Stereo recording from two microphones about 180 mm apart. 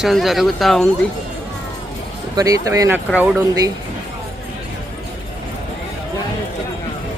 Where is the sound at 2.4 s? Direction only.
20° right (ahead or behind).